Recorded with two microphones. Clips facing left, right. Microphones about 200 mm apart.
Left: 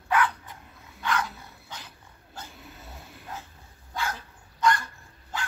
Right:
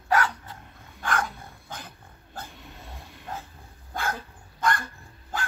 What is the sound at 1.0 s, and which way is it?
Dog, 50° right (ahead or behind).